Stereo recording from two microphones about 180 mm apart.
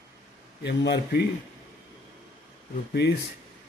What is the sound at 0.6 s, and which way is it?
Speech, 70° left (ahead or behind).